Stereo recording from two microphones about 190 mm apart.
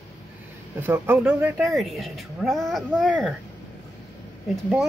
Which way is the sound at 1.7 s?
Centre (ahead or behind).